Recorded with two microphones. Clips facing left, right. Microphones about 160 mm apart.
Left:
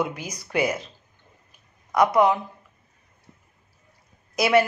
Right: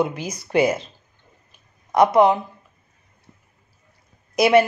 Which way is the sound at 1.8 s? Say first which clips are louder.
Right 4 dB; 25° right (ahead or behind).